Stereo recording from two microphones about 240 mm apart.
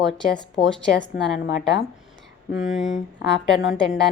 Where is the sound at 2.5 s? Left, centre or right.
Left.